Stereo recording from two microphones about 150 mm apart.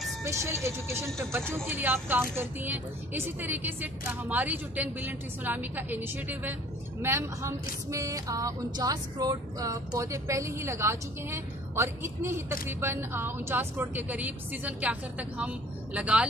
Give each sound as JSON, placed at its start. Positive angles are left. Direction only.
{"t": 0.2, "sound": "a woman's voice", "side_deg": -20}
{"t": 7.9, "sound": "music", "side_deg": -20}
{"t": 12.6, "sound": "a woman's voice", "side_deg": -15}